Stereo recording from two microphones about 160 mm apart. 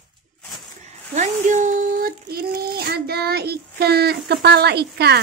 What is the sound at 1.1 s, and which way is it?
A child's voice, 50° right (ahead or behind).